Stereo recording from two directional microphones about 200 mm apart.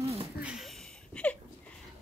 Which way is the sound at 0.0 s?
30° right (ahead or behind).